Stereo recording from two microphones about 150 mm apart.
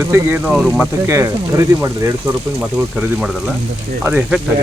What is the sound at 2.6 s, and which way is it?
Speech, 10° right (ahead or behind).